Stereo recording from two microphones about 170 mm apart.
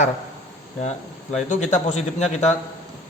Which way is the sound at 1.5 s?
45° left (ahead or behind).